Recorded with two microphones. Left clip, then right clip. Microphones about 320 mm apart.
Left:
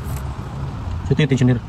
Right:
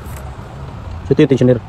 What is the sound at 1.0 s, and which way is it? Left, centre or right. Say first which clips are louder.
Speech: right 8 dB; centre.